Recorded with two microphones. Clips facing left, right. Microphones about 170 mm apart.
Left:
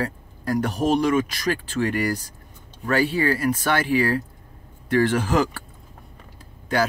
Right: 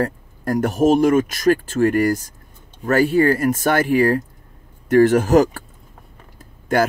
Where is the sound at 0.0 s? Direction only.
50° right (ahead or behind).